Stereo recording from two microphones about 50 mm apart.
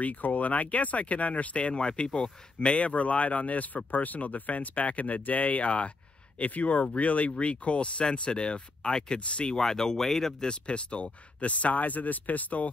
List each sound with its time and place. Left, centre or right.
0.0 s speech: left; by 10.5 s centre
10.5 s speech: left